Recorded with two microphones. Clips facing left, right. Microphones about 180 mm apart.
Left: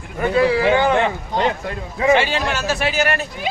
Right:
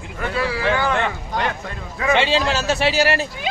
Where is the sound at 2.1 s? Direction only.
25° right (ahead or behind).